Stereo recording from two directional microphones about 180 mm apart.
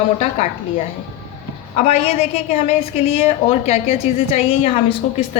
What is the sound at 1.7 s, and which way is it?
A woman's voice, 40° left (ahead or behind).